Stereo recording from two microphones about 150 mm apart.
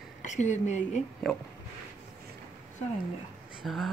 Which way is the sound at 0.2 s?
55° left (ahead or behind).